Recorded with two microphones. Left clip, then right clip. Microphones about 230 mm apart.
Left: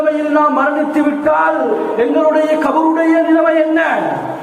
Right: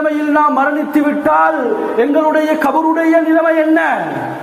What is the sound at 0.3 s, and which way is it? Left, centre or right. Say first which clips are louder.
A man's voice: right 1 dB; right.